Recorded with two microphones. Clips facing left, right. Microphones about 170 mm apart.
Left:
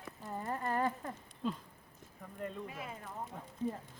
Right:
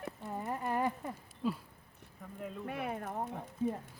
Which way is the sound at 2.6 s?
65° right (ahead or behind).